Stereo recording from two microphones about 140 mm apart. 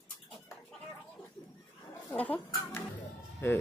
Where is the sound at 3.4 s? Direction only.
15° left (ahead or behind).